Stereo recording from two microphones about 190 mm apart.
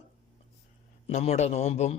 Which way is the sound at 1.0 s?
35° left (ahead or behind).